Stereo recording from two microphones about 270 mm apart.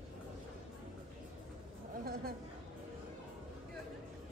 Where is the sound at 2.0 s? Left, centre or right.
Right.